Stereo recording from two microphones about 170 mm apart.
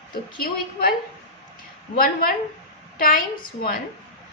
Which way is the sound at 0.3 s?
60° left (ahead or behind).